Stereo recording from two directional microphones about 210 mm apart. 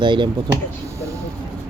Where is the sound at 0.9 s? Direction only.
15° right (ahead or behind).